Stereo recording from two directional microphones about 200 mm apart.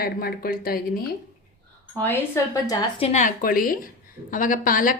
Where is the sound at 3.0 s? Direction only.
35° left (ahead or behind).